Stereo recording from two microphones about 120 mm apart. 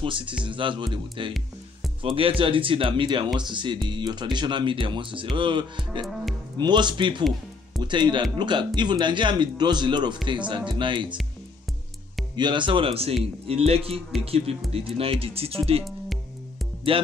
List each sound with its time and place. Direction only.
0.0 s speech: 45° right (ahead or behind)
12.4 s speech: 40° right (ahead or behind)
16.9 s speech: 50° right (ahead or behind)